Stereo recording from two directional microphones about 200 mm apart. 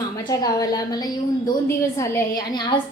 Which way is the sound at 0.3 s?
20° left (ahead or behind).